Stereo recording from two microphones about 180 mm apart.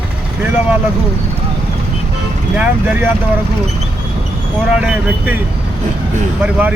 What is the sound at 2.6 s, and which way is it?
Speech, 10° right (ahead or behind).